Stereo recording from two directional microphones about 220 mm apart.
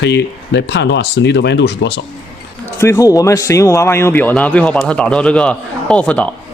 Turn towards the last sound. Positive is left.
turn(degrees=5)  # may be behind; listen again after turning